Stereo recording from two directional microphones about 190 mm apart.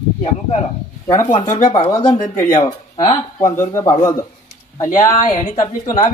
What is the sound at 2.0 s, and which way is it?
Speech, 35° left (ahead or behind).